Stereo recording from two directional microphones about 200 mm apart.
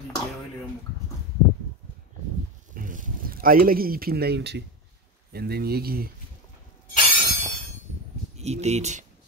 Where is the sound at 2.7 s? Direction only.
40° right (ahead or behind).